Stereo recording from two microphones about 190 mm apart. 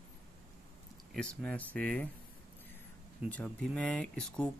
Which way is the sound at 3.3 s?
5° left (ahead or behind).